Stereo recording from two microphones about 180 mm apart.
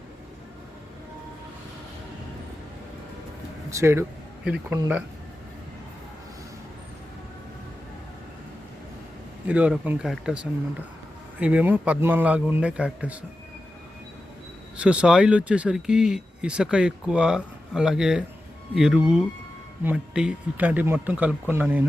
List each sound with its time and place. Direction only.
3.7 s speech: 15° right (ahead or behind)
4.4 s speech: 5° right (ahead or behind)
9.5 s speech: 10° right (ahead or behind)
14.8 s speech: 5° right (ahead or behind)